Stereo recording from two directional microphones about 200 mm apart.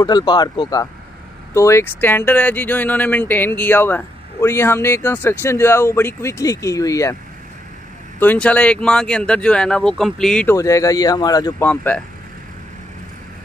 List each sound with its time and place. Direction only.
0.0 s speech: 20° left (ahead or behind)
8.2 s speech: 10° left (ahead or behind)
11.7 s speech: 5° left (ahead or behind)